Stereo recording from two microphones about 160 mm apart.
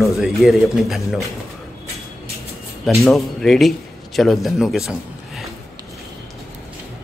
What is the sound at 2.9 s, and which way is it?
A man's voice, centre (ahead or behind).